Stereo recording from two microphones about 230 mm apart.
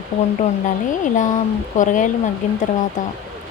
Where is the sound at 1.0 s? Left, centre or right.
Left.